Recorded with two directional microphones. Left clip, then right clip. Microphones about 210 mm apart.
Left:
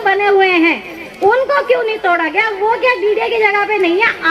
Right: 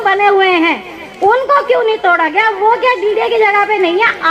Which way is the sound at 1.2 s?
30° right (ahead or behind).